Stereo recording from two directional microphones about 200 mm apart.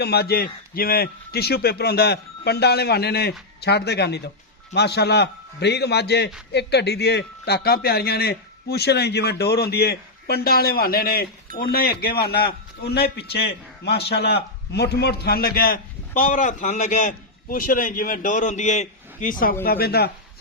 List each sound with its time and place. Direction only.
0.0 s a man's voice: 55° left (ahead or behind)